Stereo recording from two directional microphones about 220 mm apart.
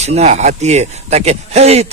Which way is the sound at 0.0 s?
30° right (ahead or behind).